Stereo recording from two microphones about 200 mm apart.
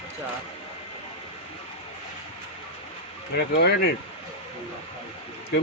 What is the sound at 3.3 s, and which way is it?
Speech, 55° left (ahead or behind).